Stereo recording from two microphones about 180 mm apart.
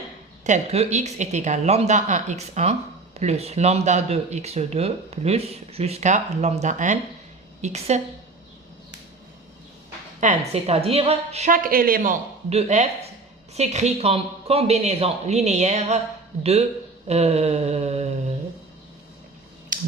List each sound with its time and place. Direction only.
0.4 s speech: 40° right (ahead or behind)
10.2 s a woman's voice: 40° right (ahead or behind)
12.5 s speech: 40° right (ahead or behind)
19.7 s finger snapping: 45° right (ahead or behind)